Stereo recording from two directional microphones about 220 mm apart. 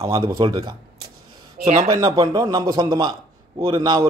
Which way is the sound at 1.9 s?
20° right (ahead or behind).